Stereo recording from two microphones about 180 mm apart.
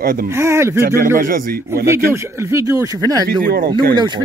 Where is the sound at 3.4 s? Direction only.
60° right (ahead or behind).